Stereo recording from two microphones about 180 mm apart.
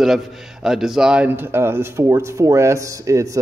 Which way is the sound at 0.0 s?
Centre (ahead or behind).